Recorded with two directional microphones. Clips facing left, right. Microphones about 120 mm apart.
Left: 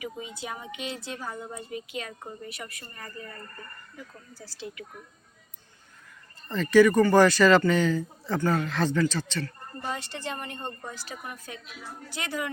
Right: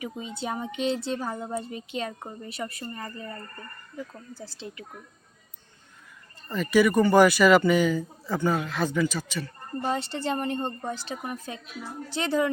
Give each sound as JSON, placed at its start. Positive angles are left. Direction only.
{"t": 0.0, "sound": "speech", "side_deg": -30}
{"t": 6.5, "sound": "a man's voice", "side_deg": -10}
{"t": 9.8, "sound": "speech", "side_deg": -30}